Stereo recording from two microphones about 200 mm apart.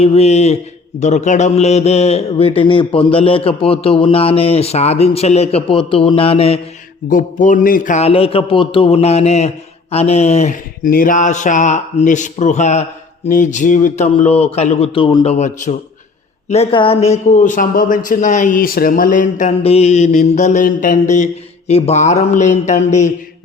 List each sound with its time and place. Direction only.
0.0 s a man's voice: 30° left (ahead or behind)
7.1 s a man's voice: 40° left (ahead or behind)